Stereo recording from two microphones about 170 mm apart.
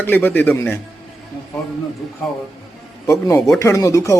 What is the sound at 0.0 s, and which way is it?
Speech, 10° left (ahead or behind).